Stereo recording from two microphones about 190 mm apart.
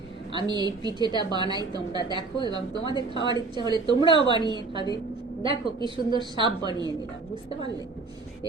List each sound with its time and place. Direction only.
0.3 s speech: 20° right (ahead or behind)
2.9 s a woman's voice: 25° left (ahead or behind)
3.3 s speech: 20° right (ahead or behind)
4.0 s a woman's voice: 25° left (ahead or behind)
4.4 s speech: 25° right (ahead or behind)